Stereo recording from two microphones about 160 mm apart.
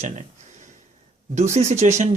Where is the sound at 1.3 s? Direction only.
45° right (ahead or behind).